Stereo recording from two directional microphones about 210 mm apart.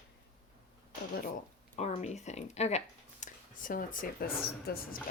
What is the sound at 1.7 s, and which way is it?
Speech, 35° left (ahead or behind).